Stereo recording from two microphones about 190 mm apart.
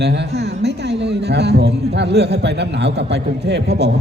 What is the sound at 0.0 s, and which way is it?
A man's voice, 60° right (ahead or behind).